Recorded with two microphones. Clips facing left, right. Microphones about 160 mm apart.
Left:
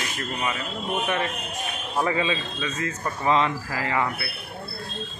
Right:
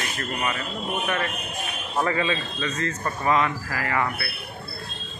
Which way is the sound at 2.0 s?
15° left (ahead or behind).